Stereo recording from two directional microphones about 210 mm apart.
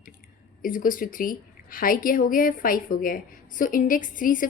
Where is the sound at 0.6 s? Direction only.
40° left (ahead or behind).